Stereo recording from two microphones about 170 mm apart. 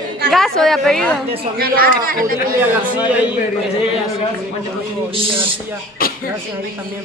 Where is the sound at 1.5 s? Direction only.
60° right (ahead or behind).